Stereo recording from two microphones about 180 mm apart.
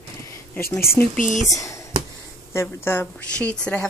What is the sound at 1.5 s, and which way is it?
Speech, 20° left (ahead or behind).